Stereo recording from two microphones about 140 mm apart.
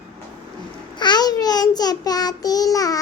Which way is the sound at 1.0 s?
30° left (ahead or behind).